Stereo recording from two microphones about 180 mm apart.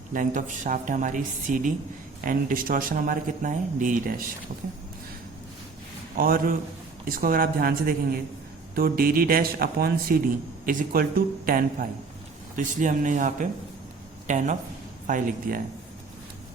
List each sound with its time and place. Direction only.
0.1 s speech: 45° right (ahead or behind)
6.1 s speech: 55° right (ahead or behind)